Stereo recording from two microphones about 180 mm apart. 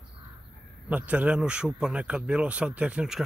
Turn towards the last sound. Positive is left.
turn(degrees=-5)  # may be behind; listen again after turning